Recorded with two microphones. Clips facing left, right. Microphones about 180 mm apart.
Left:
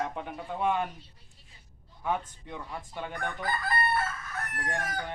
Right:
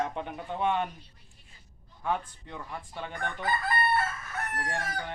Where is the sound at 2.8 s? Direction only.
10° left (ahead or behind).